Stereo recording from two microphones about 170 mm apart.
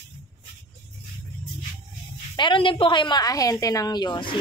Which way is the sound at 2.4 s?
30° left (ahead or behind).